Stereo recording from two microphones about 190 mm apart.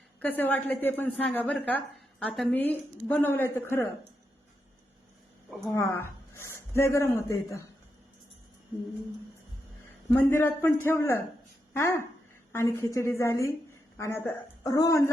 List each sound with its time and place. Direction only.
0.2 s a woman's voice: 10° left (ahead or behind)
5.5 s a sound: centre (ahead or behind)
5.7 s a woman's voice: 15° left (ahead or behind)
10.1 s a woman's voice: 10° left (ahead or behind)